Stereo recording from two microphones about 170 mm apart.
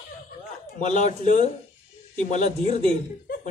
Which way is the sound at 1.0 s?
45° left (ahead or behind).